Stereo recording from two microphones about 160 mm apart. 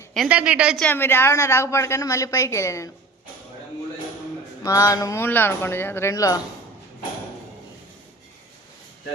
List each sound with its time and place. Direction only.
0.3 s a woman's voice: 10° right (ahead or behind)
0.8 s a woman's voice: 10° left (ahead or behind)
4.6 s a woman's voice: 20° left (ahead or behind)